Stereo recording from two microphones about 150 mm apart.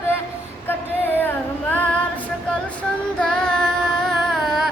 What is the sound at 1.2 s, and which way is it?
Female singing, 10° left (ahead or behind).